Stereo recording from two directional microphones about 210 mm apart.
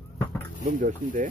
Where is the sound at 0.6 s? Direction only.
40° right (ahead or behind).